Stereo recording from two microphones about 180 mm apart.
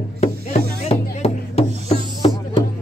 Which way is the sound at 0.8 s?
35° left (ahead or behind).